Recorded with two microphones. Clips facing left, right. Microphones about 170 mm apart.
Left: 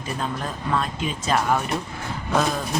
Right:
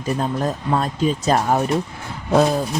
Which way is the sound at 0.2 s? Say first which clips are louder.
Right 6 dB; 40° right (ahead or behind).